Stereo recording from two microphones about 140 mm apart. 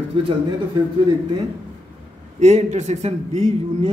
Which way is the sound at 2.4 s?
55° right (ahead or behind).